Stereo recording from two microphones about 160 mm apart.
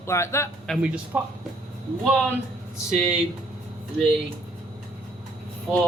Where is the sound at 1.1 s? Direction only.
10° right (ahead or behind).